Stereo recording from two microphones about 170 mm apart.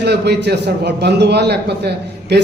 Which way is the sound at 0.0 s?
80° right.